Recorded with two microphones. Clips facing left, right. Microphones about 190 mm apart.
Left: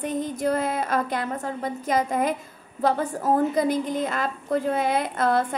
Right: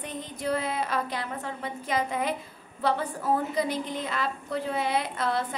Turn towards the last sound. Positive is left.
turn(degrees=50)  # may be behind; listen again after turning